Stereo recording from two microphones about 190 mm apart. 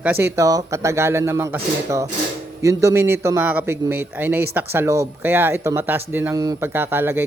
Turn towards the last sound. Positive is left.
turn(degrees=-10)  # may be behind; listen again after turning